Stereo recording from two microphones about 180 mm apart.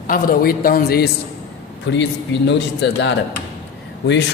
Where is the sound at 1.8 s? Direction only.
80° left.